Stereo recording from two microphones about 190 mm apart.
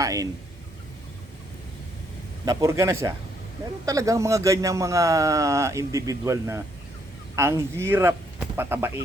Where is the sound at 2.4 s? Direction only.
20° right (ahead or behind).